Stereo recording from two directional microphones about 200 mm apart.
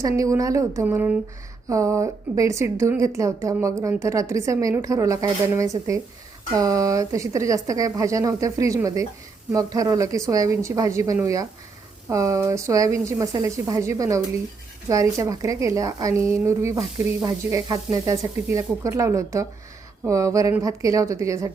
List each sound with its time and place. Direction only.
0.0 s a woman's voice: 15° right (ahead or behind)